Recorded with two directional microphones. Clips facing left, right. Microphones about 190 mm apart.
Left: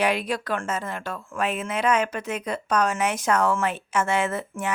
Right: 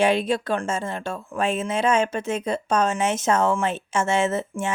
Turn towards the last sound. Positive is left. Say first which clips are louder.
# right 3 dB
turn(degrees=-25)  # may be behind; listen again after turning